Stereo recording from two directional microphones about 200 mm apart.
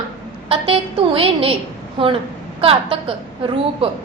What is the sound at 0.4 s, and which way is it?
A woman's voice, 25° right (ahead or behind).